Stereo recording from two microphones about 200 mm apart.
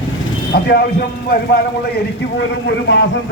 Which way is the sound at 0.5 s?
50° left (ahead or behind).